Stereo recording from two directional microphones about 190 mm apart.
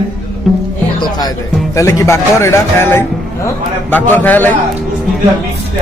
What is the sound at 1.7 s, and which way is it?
A man's voice, 15° left (ahead or behind).